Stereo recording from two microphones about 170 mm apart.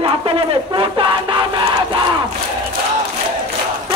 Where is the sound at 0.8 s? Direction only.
30° right (ahead or behind).